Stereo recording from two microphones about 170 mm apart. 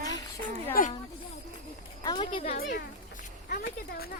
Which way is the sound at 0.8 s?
55° left (ahead or behind).